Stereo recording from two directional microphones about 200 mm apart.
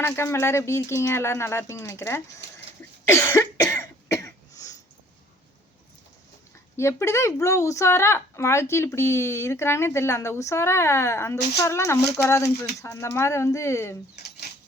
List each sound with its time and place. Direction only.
0.0 s speech: 15° left (ahead or behind)
3.1 s cough: 15° left (ahead or behind)
6.7 s speech: 15° left (ahead or behind)
14.2 s a sound: 55° left (ahead or behind)